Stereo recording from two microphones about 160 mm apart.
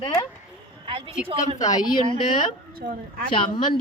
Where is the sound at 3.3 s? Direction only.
30° left (ahead or behind).